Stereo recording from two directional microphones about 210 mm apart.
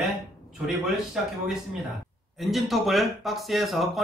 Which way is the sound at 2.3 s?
Centre (ahead or behind).